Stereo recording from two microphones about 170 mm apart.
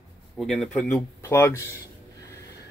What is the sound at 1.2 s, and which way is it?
Speech, 15° left (ahead or behind).